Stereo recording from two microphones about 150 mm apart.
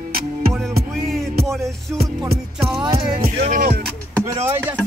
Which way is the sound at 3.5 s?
90° right.